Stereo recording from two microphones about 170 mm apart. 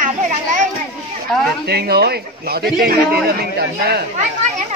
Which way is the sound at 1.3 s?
Centre (ahead or behind).